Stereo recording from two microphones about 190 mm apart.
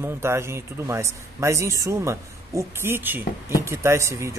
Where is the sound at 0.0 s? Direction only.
15° right (ahead or behind).